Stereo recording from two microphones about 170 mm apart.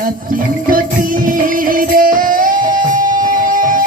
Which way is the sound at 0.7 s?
55° right (ahead or behind).